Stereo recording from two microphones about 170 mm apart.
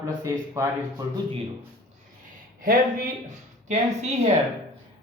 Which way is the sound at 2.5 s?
55° right (ahead or behind).